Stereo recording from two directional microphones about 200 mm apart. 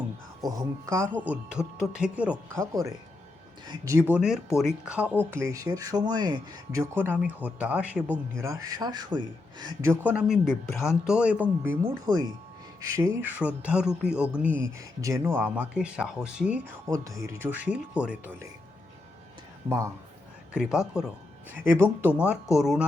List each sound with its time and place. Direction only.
0.4 s speech: 15° right (ahead or behind)
1.0 s speech: 5° left (ahead or behind)
1.3 s speech: 5° right (ahead or behind)
3.7 s speech: 15° right (ahead or behind)
8.4 s speech: 15° right (ahead or behind)
19.6 s speech: 15° right (ahead or behind)